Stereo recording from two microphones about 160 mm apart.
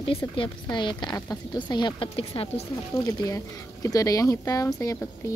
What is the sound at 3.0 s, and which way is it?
Speech, 20° left (ahead or behind).